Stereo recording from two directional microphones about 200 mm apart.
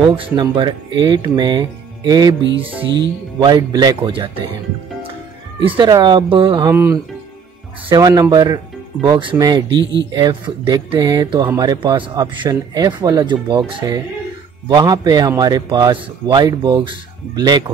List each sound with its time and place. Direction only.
0.1 s speech: 25° right (ahead or behind)
3.3 s speech: 20° right (ahead or behind)
5.6 s speech: 25° right (ahead or behind)
6.7 s music: 15° right (ahead or behind)
7.9 s speech: 20° right (ahead or behind)